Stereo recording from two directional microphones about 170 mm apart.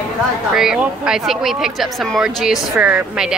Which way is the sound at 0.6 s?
5° right (ahead or behind).